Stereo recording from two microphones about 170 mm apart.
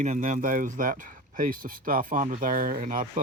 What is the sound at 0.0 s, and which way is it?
Speech, 45° right (ahead or behind).